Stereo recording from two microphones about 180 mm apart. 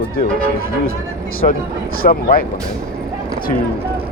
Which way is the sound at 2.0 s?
55° left (ahead or behind).